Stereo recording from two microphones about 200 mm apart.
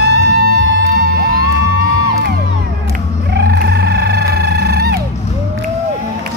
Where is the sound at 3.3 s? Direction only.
55° right (ahead or behind).